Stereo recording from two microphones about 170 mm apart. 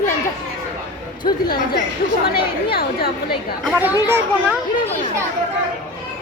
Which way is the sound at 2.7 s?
60° left (ahead or behind).